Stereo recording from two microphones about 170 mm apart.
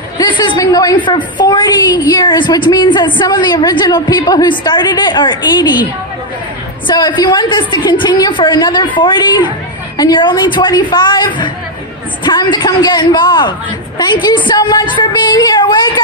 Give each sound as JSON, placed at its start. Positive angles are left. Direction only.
{"t": 0.2, "sound": "a sound", "side_deg": 25}
{"t": 1.0, "sound": "a woman's voice", "side_deg": 25}
{"t": 6.9, "sound": "a woman's voice", "side_deg": 25}